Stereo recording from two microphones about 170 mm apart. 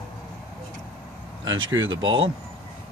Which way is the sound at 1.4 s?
90° right.